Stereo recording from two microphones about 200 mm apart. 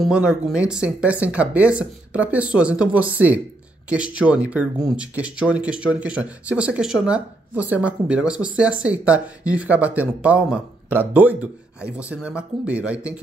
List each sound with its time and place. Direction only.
0.0 s speech: 5° right (ahead or behind)